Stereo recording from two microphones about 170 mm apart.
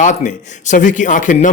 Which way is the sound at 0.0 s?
45° left (ahead or behind).